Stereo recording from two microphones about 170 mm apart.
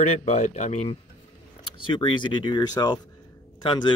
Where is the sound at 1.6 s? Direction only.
30° left (ahead or behind).